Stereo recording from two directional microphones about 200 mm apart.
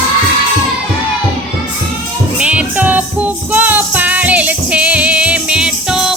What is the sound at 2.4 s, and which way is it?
Music, 5° right (ahead or behind).